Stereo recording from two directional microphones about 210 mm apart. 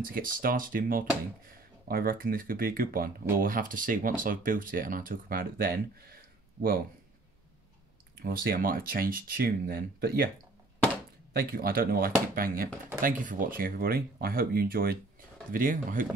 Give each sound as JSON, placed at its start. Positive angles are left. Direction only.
{"t": 0.0, "sound": "speech", "side_deg": -45}
{"t": 8.2, "sound": "speech", "side_deg": -45}
{"t": 11.3, "sound": "speech", "side_deg": -45}